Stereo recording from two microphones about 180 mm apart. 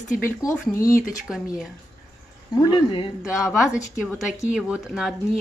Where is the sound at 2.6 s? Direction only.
25° left (ahead or behind).